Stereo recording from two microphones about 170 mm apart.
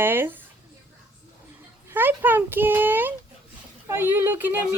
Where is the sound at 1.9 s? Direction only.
10° right (ahead or behind).